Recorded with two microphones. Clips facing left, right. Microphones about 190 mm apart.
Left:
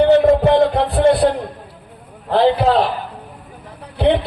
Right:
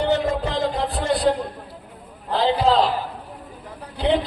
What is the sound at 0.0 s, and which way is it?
Music, 60° left (ahead or behind).